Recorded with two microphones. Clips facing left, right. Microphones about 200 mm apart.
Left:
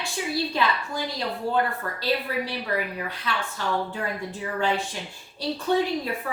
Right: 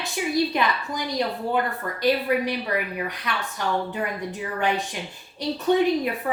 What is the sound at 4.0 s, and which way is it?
Speech, 15° right (ahead or behind).